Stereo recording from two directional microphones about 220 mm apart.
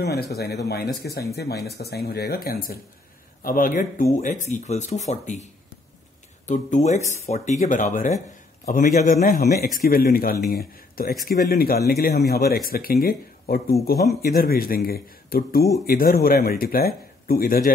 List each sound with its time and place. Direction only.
0.0 s speech: 45° left (ahead or behind)